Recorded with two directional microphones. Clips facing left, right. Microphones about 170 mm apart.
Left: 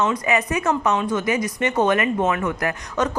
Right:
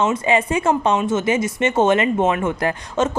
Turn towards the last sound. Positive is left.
turn(degrees=-25)  # may be behind; listen again after turning